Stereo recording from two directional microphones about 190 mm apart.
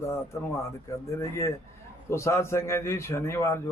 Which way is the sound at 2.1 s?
15° left (ahead or behind).